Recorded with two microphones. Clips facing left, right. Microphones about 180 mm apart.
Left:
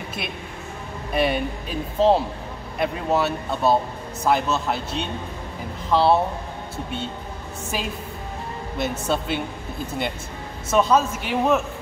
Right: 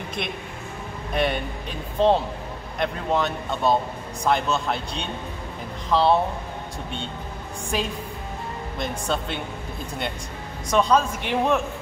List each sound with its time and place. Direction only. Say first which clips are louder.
1.1 s speech: left 2 dB; 5° left (ahead or behind)
7.7 s speech: right 2 dB; 5° left (ahead or behind)
10.7 s speech: left 1 dB; 5° left (ahead or behind)